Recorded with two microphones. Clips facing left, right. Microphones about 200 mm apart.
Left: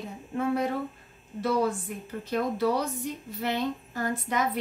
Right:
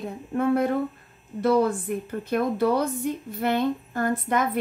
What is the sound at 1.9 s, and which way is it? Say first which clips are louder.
A woman's voice: right 5 dB; 55° right (ahead or behind).